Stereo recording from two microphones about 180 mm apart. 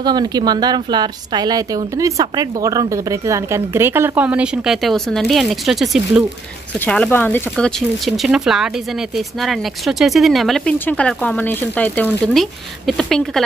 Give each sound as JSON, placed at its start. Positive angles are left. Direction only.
{"t": 0.0, "sound": "a woman's voice", "side_deg": -25}
{"t": 6.8, "sound": "speech", "side_deg": 10}